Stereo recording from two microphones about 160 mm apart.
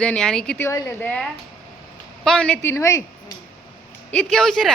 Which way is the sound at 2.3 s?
10° left (ahead or behind).